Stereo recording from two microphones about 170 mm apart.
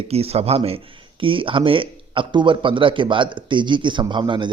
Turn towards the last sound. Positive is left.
turn(degrees=-30)  # may be behind; listen again after turning